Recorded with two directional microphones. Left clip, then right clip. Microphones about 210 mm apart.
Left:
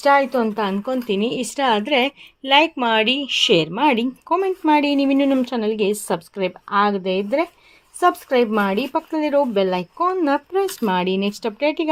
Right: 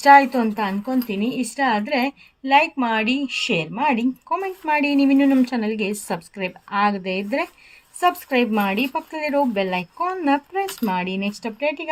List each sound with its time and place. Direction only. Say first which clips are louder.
0.0 s a woman's voice: right 3 dB; 10° left (ahead or behind)
0.5 s a woman's voice: left 1 dB; 25° left (ahead or behind)